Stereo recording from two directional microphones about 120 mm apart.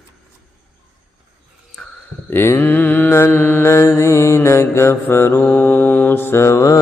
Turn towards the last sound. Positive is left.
turn(degrees=25)  # may be behind; listen again after turning